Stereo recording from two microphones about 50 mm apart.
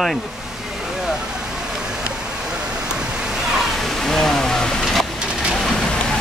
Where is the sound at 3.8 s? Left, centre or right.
Centre.